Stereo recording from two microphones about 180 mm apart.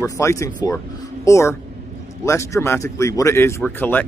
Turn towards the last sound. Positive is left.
turn(degrees=10)  # may be behind; listen again after turning